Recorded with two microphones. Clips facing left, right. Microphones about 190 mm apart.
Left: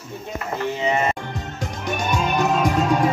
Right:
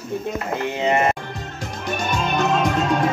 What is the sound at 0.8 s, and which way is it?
Music, 65° right (ahead or behind).